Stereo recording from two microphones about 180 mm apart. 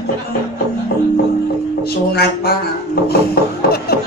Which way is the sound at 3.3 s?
60° left (ahead or behind).